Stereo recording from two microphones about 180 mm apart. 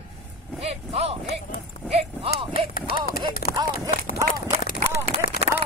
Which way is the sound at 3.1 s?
55° left (ahead or behind).